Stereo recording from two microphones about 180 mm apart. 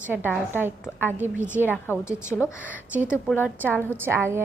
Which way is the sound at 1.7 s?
10° left (ahead or behind).